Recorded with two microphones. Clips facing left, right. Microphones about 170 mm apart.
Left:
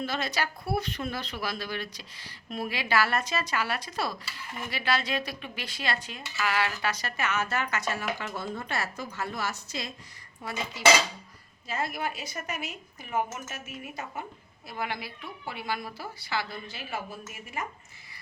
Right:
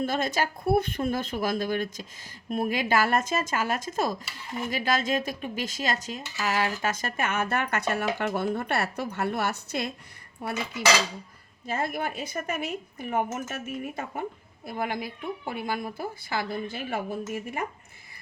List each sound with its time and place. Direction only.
0.0 s speech: 50° right (ahead or behind)
10.4 s dishes: 60° right (ahead or behind)
11.6 s speech: 50° right (ahead or behind)